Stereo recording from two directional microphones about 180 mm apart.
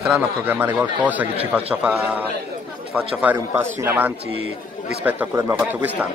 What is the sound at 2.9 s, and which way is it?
A man's voice, 10° right (ahead or behind).